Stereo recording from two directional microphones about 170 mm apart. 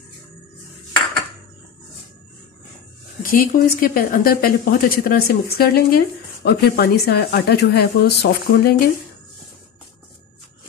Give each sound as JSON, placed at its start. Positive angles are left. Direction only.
{"t": 3.2, "sound": "speech", "side_deg": 55}